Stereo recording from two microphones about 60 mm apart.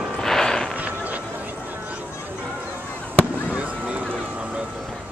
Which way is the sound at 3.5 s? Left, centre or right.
Right.